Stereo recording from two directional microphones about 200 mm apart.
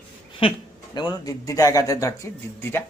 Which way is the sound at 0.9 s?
20° left (ahead or behind).